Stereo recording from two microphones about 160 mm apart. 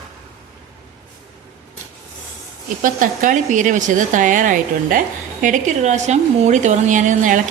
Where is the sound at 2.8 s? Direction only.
55° right (ahead or behind).